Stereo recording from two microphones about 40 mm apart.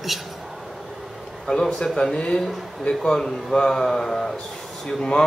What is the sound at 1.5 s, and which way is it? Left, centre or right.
Speech, centre.